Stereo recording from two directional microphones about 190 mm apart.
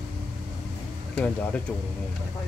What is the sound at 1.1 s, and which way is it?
Speech, 5° left (ahead or behind).